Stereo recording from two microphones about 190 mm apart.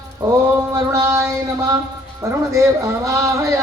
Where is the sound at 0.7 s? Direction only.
15° right (ahead or behind).